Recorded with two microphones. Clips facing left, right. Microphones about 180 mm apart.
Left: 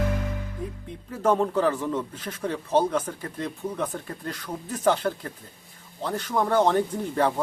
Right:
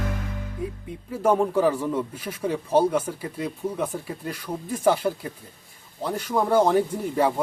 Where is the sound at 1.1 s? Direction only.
10° right (ahead or behind).